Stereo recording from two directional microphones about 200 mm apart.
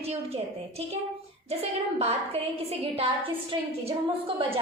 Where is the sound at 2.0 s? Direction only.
30° right (ahead or behind).